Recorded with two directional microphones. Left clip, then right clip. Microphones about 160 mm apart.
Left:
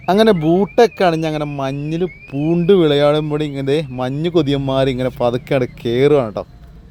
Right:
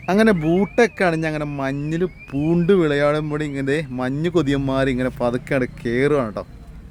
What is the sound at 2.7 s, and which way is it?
A man's voice, 20° left (ahead or behind).